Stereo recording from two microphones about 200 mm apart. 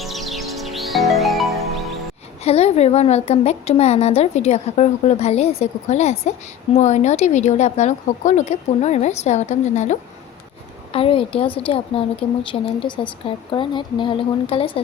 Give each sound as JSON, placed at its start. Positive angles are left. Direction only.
{"t": 0.0, "sound": "music", "side_deg": 0}
{"t": 2.4, "sound": "a woman's voice", "side_deg": 30}